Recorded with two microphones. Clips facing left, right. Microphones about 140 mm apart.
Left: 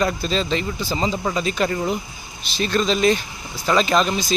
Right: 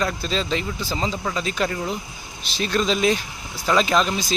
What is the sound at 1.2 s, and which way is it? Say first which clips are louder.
Speech: left 3 dB; 15° left (ahead or behind).